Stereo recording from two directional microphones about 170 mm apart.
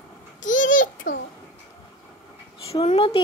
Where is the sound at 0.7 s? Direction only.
50° left (ahead or behind).